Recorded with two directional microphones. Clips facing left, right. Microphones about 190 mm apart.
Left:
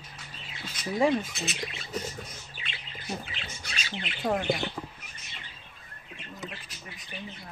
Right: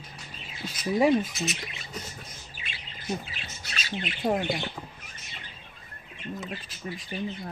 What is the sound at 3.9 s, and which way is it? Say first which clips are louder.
Speech: right 2 dB; 15° right (ahead or behind).